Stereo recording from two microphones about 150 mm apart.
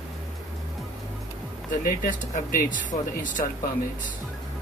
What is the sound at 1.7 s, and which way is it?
Speech, 60° left (ahead or behind).